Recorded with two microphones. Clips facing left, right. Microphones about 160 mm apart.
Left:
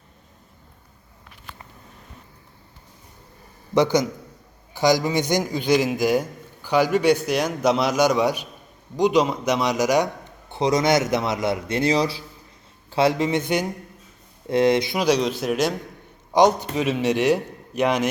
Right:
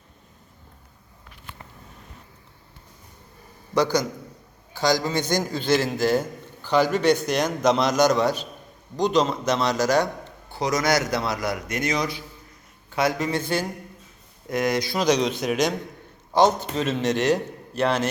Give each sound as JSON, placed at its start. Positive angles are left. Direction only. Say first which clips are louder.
{"t": 3.8, "sound": "a man's voice", "louder": "left 3 dB", "side_deg": 20}
{"t": 10.5, "sound": "a man's voice", "louder": "left 3 dB", "side_deg": 25}
{"t": 14.9, "sound": "a man's voice", "louder": "left 1 dB", "side_deg": 5}